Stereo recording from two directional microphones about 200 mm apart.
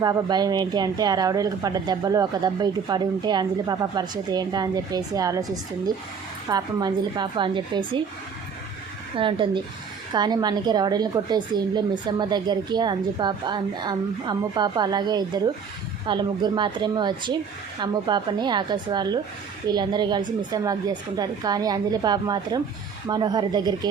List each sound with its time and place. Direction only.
0.0 s speech: 20° right (ahead or behind)
6.5 s speech: 20° right (ahead or behind)
9.1 s speech: 25° right (ahead or behind)